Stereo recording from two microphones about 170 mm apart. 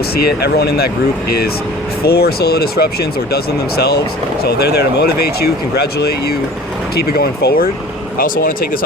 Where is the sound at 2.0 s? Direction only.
70° left (ahead or behind).